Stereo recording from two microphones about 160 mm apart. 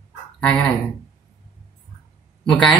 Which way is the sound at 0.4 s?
5° left (ahead or behind).